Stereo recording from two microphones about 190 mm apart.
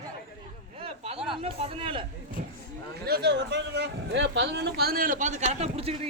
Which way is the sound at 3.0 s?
60° right (ahead or behind).